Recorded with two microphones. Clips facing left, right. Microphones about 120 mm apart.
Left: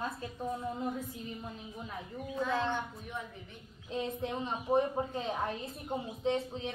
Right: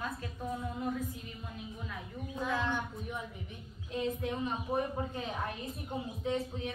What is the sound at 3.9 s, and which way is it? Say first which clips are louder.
A woman's voice: right 1 dB; 25° left (ahead or behind).